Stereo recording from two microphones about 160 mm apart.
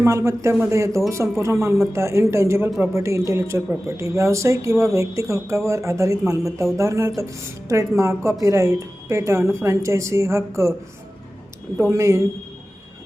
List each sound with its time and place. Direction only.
0.0 s a woman's voice: 15° right (ahead or behind)
11.8 s speech: 20° right (ahead or behind)